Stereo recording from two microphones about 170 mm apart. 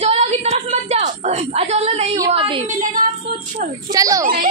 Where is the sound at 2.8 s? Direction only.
50° right (ahead or behind).